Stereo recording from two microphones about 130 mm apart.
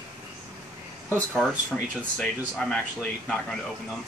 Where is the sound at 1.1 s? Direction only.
5° left (ahead or behind).